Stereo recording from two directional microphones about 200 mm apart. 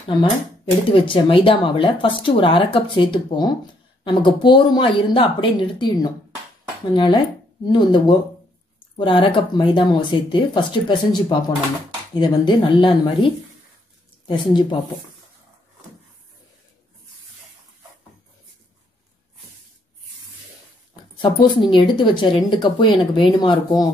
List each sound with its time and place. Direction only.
1.0 s speech: 25° left (ahead or behind)
21.2 s speech: 25° left (ahead or behind)